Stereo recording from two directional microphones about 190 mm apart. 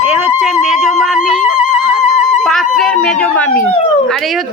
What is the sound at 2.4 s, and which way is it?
Music, centre (ahead or behind).